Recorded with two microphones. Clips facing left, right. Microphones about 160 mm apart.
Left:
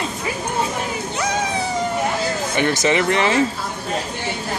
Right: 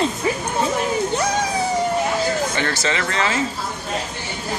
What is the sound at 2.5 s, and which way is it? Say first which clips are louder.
Speech: left 5 dB; 20° left (ahead or behind).